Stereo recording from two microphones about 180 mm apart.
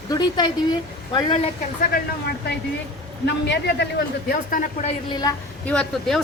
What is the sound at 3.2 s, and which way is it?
Speech, 75° left (ahead or behind).